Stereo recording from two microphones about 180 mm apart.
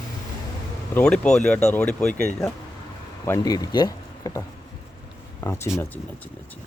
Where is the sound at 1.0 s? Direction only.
5° left (ahead or behind).